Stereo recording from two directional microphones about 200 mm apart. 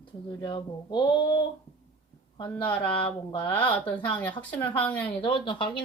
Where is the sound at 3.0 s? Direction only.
25° left (ahead or behind).